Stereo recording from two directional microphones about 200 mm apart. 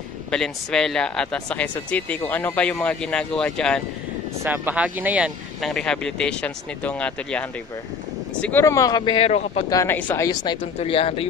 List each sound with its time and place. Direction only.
0.3 s speech: 5° left (ahead or behind)
4.4 s speech: 10° right (ahead or behind); by 9.7 s 30° left (ahead or behind)
9.7 s speech: 15° left (ahead or behind); by 11.2 s 30° left (ahead or behind)